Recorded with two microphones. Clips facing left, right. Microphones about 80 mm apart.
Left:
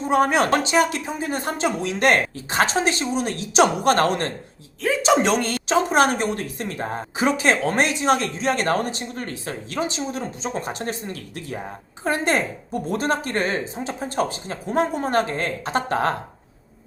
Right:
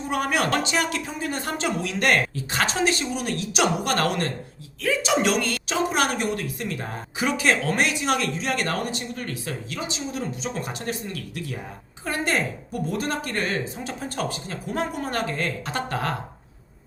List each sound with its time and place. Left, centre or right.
0.1 s a woman's voice: left